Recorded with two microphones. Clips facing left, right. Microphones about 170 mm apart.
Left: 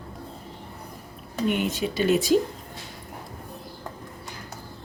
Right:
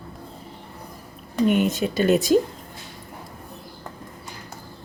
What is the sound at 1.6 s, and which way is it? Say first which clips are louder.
Speech: right 4 dB; 45° right (ahead or behind).